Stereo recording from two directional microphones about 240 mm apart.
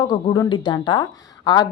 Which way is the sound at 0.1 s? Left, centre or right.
Centre.